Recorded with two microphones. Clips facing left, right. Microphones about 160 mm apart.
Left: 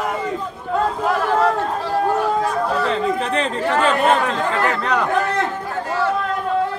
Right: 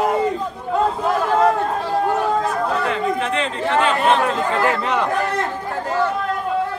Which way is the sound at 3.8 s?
5° right (ahead or behind).